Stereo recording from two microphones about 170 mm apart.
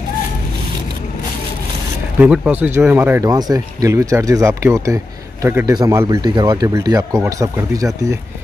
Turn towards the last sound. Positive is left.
turn(degrees=-20)  # may be behind; listen again after turning